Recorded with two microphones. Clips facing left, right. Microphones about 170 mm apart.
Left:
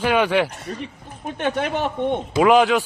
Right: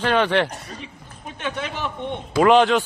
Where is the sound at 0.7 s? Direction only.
50° left (ahead or behind).